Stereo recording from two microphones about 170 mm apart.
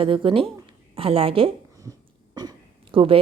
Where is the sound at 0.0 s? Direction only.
30° right (ahead or behind).